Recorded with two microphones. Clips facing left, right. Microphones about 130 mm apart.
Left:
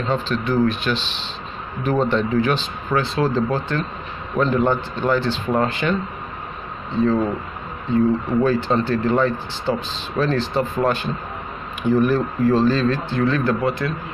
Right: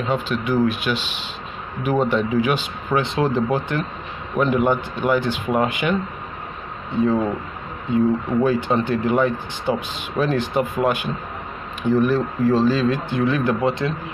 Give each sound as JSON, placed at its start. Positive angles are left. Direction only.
{"t": 0.0, "sound": "speech", "side_deg": -10}
{"t": 7.0, "sound": "speech", "side_deg": -15}
{"t": 11.9, "sound": "speech", "side_deg": 0}